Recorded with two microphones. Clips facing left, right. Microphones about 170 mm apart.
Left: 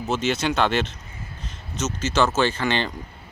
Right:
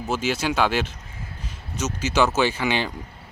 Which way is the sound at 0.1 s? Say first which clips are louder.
Left 1 dB; 10° right (ahead or behind).